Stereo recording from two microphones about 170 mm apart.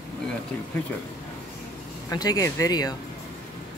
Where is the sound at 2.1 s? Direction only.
20° left (ahead or behind).